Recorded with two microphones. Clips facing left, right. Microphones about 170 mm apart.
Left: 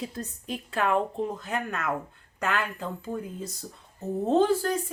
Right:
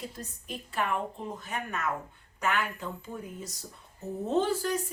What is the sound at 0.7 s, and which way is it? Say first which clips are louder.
A woman's voice: left 6 dB; 90° left.